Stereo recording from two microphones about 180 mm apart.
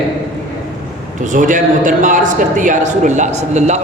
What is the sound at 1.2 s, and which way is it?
A man's voice, 45° right (ahead or behind).